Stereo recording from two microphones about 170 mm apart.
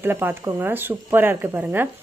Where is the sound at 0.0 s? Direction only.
15° right (ahead or behind).